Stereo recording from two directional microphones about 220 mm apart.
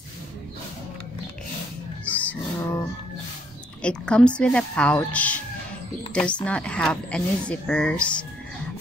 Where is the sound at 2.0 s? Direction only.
5° left (ahead or behind).